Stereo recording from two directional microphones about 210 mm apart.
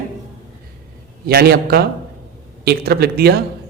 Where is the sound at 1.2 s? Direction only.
50° right (ahead or behind).